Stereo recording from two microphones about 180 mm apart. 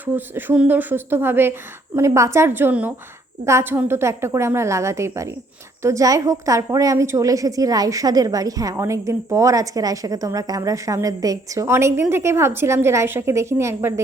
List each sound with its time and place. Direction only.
0.0 s a woman's voice: 10° right (ahead or behind)